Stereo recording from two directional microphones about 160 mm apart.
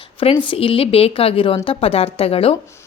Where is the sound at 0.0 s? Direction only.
35° left (ahead or behind).